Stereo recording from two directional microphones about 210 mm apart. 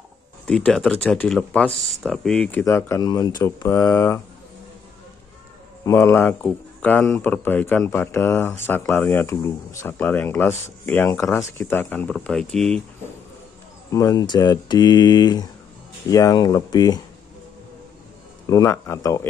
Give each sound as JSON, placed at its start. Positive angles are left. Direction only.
{"t": 0.5, "sound": "speech", "side_deg": 5}
{"t": 5.9, "sound": "speech", "side_deg": 10}
{"t": 13.8, "sound": "speech", "side_deg": 15}
{"t": 18.5, "sound": "speech", "side_deg": 15}